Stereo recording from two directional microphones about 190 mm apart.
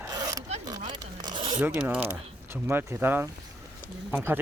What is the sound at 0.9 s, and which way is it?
Zipper, 25° right (ahead or behind).